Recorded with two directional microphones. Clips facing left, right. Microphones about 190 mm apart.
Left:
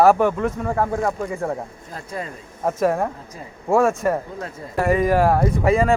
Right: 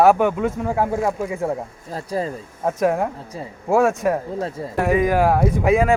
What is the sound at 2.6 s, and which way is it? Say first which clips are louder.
Speech: even; centre (ahead or behind).